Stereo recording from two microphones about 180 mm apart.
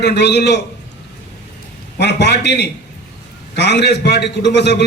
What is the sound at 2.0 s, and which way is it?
A man's voice, 70° left (ahead or behind).